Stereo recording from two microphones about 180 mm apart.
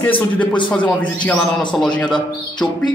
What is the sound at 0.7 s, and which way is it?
A man's voice, 5° left (ahead or behind).